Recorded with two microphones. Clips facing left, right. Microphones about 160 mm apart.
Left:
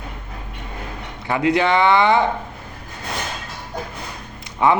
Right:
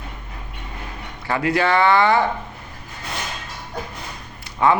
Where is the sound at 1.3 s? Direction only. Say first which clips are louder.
Left 2 dB; 20° left (ahead or behind).